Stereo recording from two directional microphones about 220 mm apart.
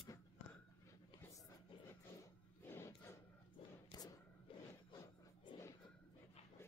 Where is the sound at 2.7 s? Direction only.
10° left (ahead or behind).